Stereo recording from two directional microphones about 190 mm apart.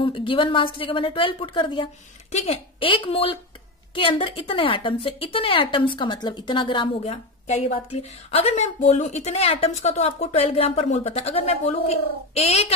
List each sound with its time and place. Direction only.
0.0 s a woman's voice: 25° left (ahead or behind)